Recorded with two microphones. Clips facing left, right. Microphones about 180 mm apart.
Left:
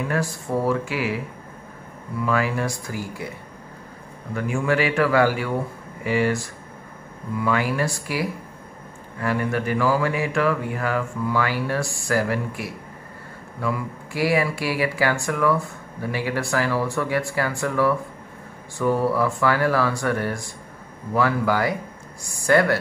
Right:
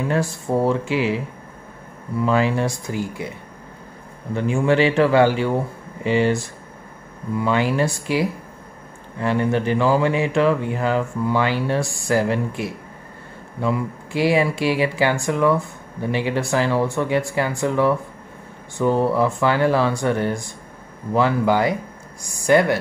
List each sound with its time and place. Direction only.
0.1 s speech: 25° right (ahead or behind)
2.2 s speech: 25° right (ahead or behind)